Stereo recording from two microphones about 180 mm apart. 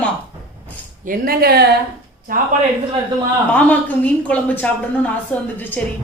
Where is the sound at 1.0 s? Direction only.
55° right (ahead or behind).